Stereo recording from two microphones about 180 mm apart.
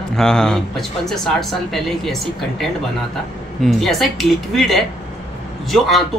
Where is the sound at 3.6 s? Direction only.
Centre (ahead or behind).